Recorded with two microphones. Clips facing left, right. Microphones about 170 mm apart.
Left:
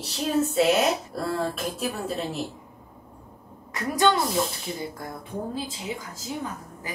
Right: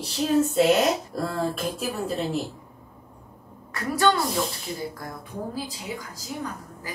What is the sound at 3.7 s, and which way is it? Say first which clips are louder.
A woman's voice: even; 20° left (ahead or behind).